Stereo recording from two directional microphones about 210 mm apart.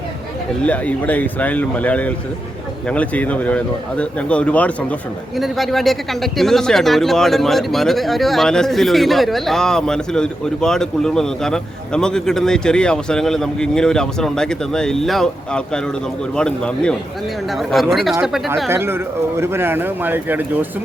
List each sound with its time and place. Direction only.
0.6 s speech: 5° left (ahead or behind); by 20.7 s 10° right (ahead or behind)